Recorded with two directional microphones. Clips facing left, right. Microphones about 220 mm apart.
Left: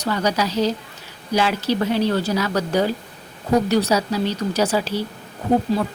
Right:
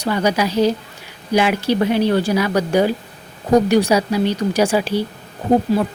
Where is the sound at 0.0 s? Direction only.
10° right (ahead or behind).